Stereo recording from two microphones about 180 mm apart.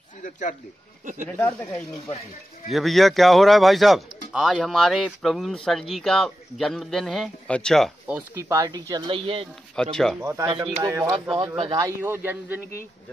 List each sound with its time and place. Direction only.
0.2 s speech: 45° left (ahead or behind)
1.0 s speech: 45° right (ahead or behind)
1.3 s speech: 10° left (ahead or behind)
2.7 s speech: centre (ahead or behind)
8.4 s speech: 15° right (ahead or behind)
9.8 s speech: 5° left (ahead or behind)
10.8 s a man's voice: 15° right (ahead or behind)
11.3 s speech: 30° right (ahead or behind)
11.8 s a man's voice: 10° right (ahead or behind)